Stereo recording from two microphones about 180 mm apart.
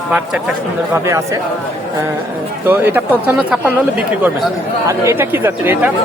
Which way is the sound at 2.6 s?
10° right (ahead or behind).